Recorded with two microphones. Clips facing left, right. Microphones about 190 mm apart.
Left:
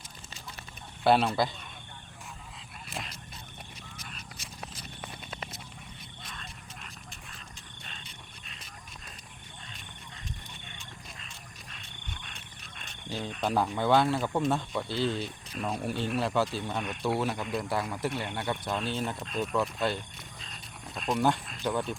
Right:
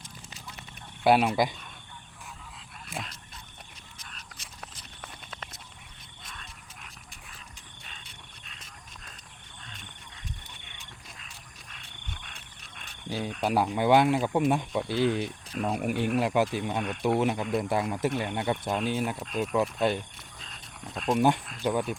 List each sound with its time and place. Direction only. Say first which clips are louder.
1.0 s speech: right 2 dB; 10° right (ahead or behind)
2.9 s dog: right 2 dB; centre (ahead or behind)
13.1 s a sound: right 3 dB; 10° right (ahead or behind)
13.3 s speech: right 2 dB; 10° right (ahead or behind)
20.4 s dog: right 4 dB; centre (ahead or behind)
21.1 s speech: right 3 dB; 20° right (ahead or behind)